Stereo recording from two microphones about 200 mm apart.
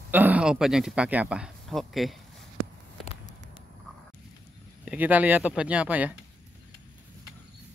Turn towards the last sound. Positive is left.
turn(degrees=-5)  # may be behind; listen again after turning